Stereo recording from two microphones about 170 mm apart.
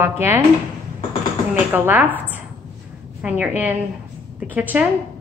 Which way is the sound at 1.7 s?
10° right (ahead or behind).